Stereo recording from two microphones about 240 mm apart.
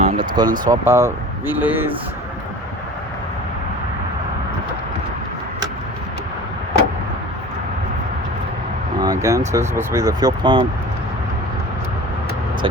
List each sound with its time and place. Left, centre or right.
0.4 s speech: centre
9.0 s a sound: centre
9.5 s speech: centre